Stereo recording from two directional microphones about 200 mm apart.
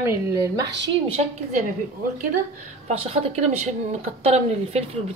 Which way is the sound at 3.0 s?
30° right (ahead or behind).